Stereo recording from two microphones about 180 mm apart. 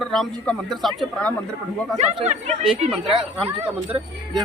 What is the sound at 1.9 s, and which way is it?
Speech, 40° right (ahead or behind).